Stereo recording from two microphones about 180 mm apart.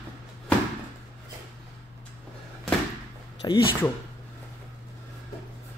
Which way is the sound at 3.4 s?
25° left (ahead or behind).